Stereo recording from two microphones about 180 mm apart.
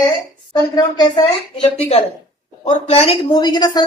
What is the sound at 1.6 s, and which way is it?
Speech, 35° left (ahead or behind).